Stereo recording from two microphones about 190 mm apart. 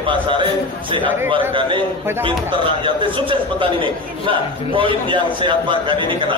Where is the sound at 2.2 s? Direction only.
25° right (ahead or behind).